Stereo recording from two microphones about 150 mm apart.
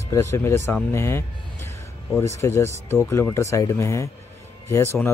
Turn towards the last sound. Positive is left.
turn(degrees=15)  # may be behind; listen again after turning